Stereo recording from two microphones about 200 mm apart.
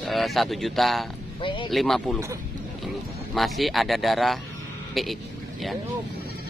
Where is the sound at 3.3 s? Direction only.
Centre (ahead or behind).